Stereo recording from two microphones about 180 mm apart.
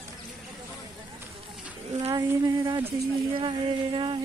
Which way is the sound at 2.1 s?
20° right (ahead or behind).